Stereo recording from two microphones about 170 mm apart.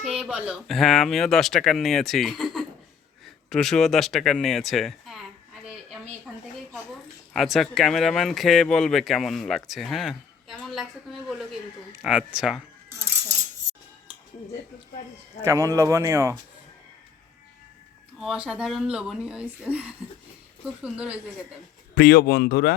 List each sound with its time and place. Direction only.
0.0 s speech: 5° right (ahead or behind)
7.3 s speech: centre (ahead or behind)
12.0 s speech: 5° right (ahead or behind)
15.4 s speech: 15° right (ahead or behind)
18.2 s speech: 5° right (ahead or behind)
20.8 s speech: 5° right (ahead or behind)
21.9 s speech: 75° left (ahead or behind)